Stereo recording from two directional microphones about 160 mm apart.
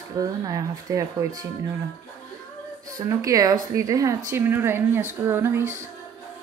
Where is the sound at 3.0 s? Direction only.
20° right (ahead or behind).